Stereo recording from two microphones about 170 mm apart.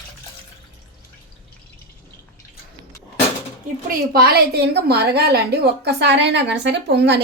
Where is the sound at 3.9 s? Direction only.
60° right (ahead or behind).